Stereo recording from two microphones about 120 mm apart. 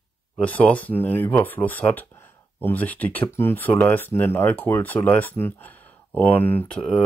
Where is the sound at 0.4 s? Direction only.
10° left (ahead or behind).